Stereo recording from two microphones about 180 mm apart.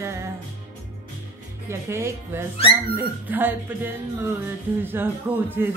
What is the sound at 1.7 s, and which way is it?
Speech, 15° right (ahead or behind).